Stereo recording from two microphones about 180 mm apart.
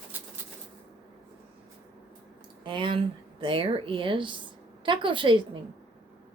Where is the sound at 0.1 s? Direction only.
10° right (ahead or behind).